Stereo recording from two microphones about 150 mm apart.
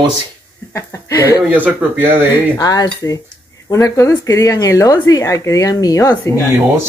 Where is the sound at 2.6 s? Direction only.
25° left (ahead or behind).